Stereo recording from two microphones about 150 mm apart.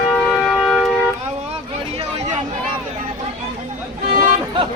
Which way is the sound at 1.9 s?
45° right (ahead or behind).